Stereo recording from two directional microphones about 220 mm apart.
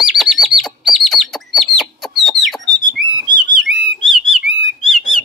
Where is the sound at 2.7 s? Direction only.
20° right (ahead or behind).